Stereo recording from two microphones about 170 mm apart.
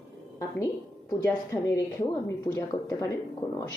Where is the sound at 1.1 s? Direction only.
20° left (ahead or behind).